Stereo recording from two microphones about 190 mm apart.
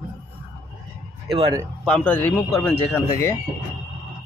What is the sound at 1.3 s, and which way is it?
Speech, 25° right (ahead or behind).